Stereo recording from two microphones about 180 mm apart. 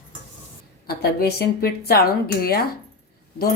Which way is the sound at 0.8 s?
60° left (ahead or behind).